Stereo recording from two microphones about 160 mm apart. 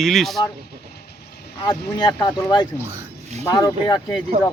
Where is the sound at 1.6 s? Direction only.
25° left (ahead or behind).